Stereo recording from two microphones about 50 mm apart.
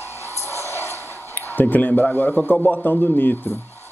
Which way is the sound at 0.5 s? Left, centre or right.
Left.